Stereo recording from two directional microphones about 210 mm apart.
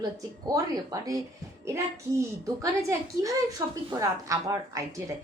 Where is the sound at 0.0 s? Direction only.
15° right (ahead or behind).